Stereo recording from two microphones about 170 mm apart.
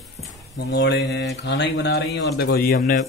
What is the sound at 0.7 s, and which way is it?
Speech, 85° left.